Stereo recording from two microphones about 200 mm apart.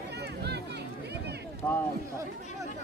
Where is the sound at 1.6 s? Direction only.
10° left (ahead or behind).